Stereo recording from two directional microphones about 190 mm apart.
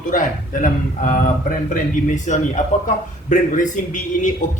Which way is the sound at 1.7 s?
40° left (ahead or behind).